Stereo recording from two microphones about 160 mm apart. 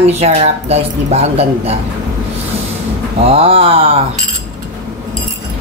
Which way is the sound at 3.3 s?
35° right (ahead or behind).